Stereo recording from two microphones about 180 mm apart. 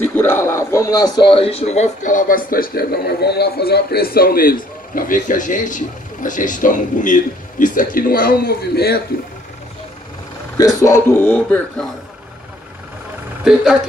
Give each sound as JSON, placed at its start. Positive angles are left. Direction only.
{"t": 0.0, "sound": "a man's voice", "side_deg": 10}
{"t": 10.6, "sound": "speech", "side_deg": 15}
{"t": 13.4, "sound": "speech", "side_deg": -5}